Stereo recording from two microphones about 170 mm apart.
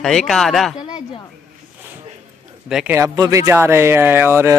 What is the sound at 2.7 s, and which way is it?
Speech, 5° right (ahead or behind).